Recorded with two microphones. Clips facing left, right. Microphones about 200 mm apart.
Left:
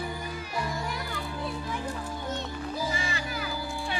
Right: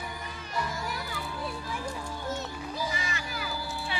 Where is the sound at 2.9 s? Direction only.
30° left (ahead or behind).